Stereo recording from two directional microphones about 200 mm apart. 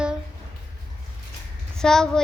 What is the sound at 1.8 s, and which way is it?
Speech, 5° left (ahead or behind).